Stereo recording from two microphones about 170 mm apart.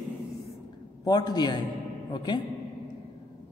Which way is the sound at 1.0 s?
25° left (ahead or behind).